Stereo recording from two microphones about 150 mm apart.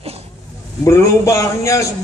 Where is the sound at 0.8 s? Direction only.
20° left (ahead or behind).